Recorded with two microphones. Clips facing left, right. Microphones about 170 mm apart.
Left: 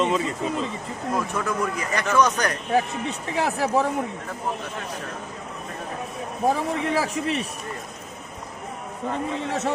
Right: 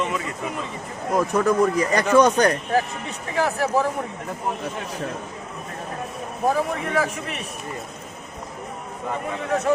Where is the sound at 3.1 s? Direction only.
20° left (ahead or behind).